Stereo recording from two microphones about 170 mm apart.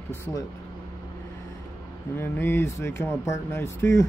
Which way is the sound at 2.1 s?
15° left (ahead or behind).